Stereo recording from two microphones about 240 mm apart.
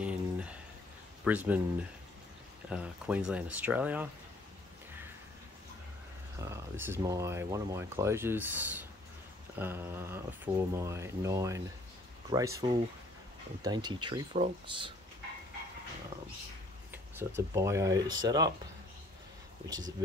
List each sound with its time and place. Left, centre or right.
0.0 s a sound: centre
1.2 s speech: centre
6.4 s speech: centre
16.9 s speech: centre